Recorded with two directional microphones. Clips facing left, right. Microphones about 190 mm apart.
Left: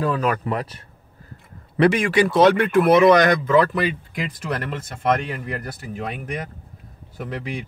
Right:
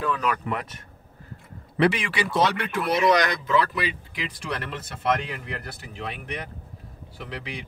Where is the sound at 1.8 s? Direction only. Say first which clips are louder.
Left 6 dB; 45° left (ahead or behind).